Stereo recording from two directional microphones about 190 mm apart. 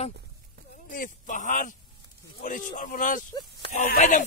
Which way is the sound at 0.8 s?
45° left (ahead or behind).